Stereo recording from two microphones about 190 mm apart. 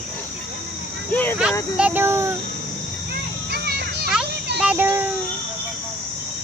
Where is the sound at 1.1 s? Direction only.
10° left (ahead or behind).